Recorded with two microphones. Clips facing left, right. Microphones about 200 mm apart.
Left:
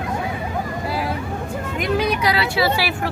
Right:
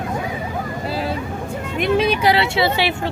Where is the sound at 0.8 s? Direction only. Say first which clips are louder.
Right 2 dB; 25° right (ahead or behind).